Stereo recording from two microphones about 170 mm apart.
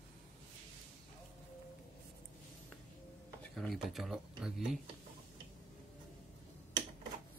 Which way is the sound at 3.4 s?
Centre (ahead or behind).